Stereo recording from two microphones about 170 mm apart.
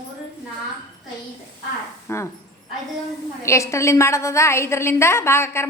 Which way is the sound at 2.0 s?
15° left (ahead or behind).